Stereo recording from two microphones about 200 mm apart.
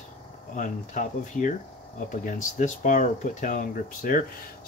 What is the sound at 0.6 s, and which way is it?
Speech, 40° left (ahead or behind).